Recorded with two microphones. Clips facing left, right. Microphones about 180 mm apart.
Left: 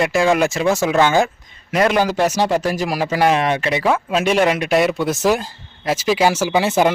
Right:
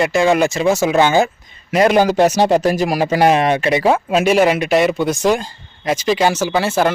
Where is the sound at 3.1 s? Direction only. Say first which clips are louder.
Right 2 dB; 40° right (ahead or behind).